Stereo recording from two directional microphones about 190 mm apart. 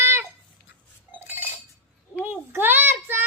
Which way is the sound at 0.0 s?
15° right (ahead or behind).